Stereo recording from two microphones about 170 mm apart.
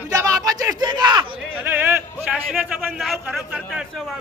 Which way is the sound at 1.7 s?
10° right (ahead or behind).